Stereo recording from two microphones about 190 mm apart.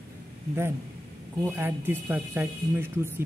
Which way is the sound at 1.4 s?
10° right (ahead or behind).